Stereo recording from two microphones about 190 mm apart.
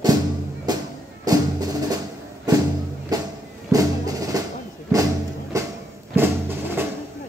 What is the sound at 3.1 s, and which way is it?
Music, 20° right (ahead or behind).